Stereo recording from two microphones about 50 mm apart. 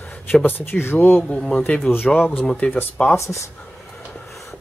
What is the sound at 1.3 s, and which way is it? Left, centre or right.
Speech, left.